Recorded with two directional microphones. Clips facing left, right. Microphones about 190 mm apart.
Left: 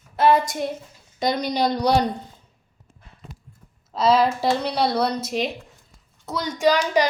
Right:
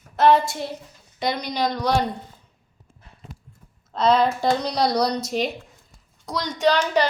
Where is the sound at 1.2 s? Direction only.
45° left (ahead or behind).